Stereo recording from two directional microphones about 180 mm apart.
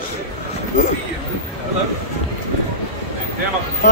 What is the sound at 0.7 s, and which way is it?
Speech, 40° left (ahead or behind).